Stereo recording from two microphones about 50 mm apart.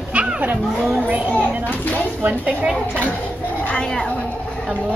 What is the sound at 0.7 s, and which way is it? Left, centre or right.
Speech, centre.